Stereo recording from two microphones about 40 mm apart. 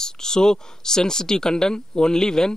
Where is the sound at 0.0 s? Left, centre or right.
Centre.